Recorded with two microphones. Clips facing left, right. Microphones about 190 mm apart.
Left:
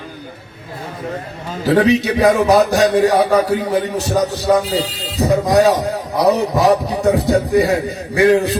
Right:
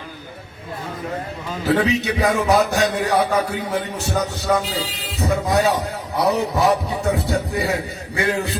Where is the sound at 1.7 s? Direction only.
35° left (ahead or behind).